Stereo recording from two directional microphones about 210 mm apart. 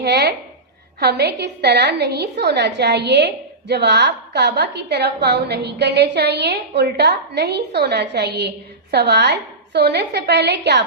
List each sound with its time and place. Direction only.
0.0 s a woman's voice: 50° right (ahead or behind)